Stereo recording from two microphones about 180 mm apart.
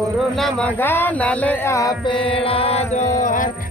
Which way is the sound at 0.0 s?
Centre (ahead or behind).